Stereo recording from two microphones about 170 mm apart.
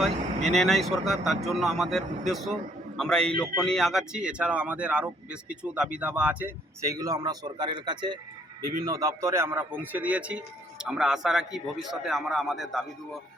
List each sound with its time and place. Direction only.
0.5 s a man's voice: centre (ahead or behind)